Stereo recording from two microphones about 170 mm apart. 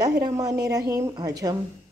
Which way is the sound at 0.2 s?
20° right (ahead or behind).